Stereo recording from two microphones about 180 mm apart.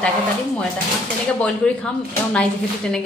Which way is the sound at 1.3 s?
5° left (ahead or behind).